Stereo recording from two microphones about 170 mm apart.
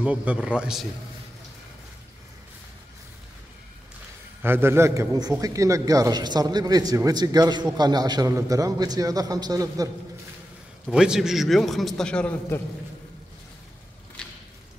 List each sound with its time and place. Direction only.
0.0 s a man's voice: 10° right (ahead or behind)
4.4 s a man's voice: 15° right (ahead or behind)
10.9 s a man's voice: 5° right (ahead or behind)